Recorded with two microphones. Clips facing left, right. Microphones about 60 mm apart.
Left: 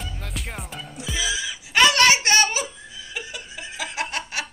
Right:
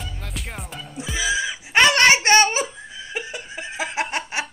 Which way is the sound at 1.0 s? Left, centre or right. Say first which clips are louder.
Right 4 dB; right.